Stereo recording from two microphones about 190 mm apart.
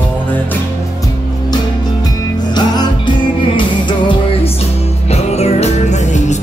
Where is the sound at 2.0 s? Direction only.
20° left (ahead or behind).